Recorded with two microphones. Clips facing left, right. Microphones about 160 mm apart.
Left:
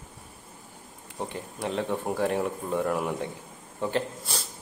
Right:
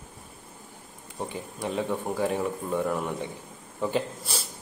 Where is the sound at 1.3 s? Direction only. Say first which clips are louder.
Even; 5° right (ahead or behind).